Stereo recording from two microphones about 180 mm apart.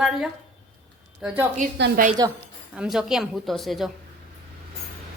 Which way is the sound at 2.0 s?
55° right (ahead or behind).